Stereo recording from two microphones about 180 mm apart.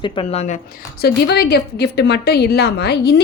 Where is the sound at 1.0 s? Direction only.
65° left (ahead or behind).